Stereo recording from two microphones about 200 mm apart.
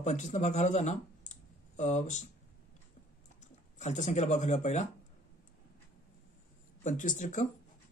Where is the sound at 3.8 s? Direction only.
35° left (ahead or behind).